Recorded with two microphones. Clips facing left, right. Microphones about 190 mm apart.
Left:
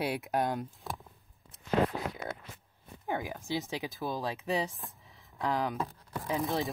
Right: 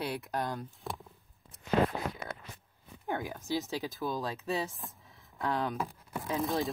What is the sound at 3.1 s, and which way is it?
Speech, 15° left (ahead or behind).